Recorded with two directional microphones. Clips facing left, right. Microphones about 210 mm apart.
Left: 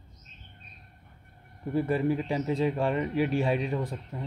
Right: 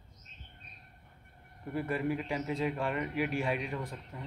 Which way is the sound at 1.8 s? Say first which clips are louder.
Left 6 dB; 30° left (ahead or behind).